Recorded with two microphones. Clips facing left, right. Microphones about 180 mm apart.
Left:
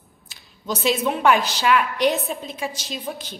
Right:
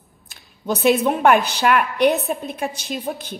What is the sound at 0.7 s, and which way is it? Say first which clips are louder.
A woman's voice: right 5 dB; 60° right (ahead or behind).